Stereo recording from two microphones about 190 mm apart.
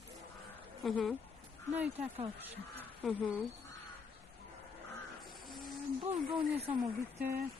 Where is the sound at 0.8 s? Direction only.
Centre (ahead or behind).